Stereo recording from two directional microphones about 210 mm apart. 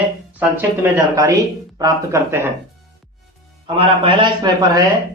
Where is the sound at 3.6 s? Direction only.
25° right (ahead or behind).